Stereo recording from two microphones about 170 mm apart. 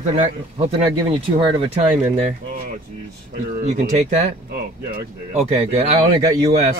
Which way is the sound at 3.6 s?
40° right (ahead or behind).